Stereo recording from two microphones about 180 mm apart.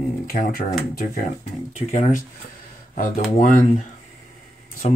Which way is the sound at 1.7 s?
45° left (ahead or behind).